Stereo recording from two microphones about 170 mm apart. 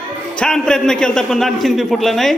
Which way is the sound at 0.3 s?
5° left (ahead or behind).